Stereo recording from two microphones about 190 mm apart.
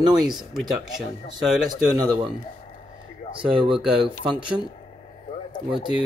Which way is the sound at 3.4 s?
25° right (ahead or behind).